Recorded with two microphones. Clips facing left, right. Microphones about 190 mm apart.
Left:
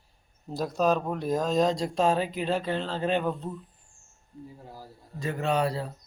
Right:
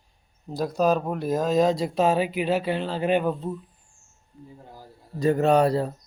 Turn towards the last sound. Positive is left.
turn(degrees=-45)  # may be behind; listen again after turning